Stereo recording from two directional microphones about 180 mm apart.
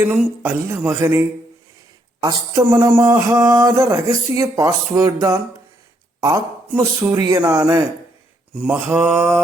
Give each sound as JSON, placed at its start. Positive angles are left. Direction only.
{"t": 0.0, "sound": "a man's voice", "side_deg": -10}
{"t": 2.2, "sound": "a man's voice", "side_deg": -20}